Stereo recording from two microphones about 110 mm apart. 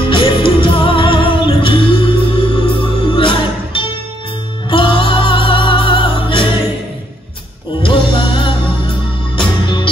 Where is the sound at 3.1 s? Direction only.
50° left (ahead or behind).